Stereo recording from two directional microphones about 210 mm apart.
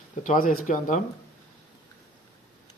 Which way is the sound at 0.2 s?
40° left (ahead or behind).